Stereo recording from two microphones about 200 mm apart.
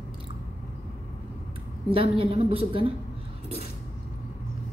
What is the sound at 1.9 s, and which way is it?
A woman's voice, 25° right (ahead or behind).